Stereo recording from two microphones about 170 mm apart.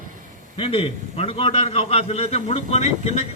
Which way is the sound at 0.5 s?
35° left (ahead or behind).